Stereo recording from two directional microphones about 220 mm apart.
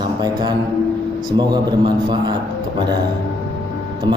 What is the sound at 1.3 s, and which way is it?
A man's voice, 20° right (ahead or behind).